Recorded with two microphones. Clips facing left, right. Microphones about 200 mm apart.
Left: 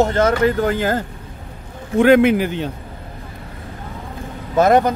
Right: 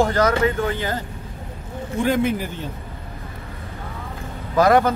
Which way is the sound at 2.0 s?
75° left (ahead or behind).